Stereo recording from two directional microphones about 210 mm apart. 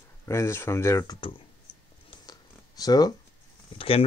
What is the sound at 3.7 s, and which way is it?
Speech, 25° left (ahead or behind).